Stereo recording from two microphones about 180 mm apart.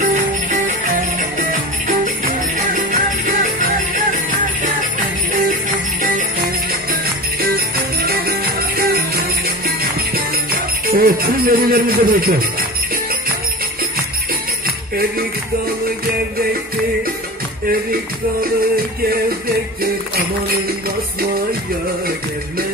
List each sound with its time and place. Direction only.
0.0 s music: 45° right (ahead or behind)
7.4 s music: 55° right (ahead or behind)
10.9 s speech: 55° right (ahead or behind)